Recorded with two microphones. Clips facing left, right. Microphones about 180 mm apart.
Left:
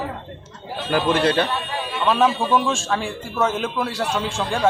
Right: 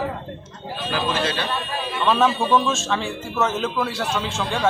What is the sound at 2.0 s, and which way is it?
Speech, 5° left (ahead or behind).